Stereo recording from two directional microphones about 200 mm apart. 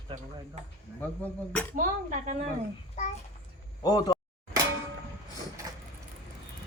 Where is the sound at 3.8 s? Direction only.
20° left (ahead or behind).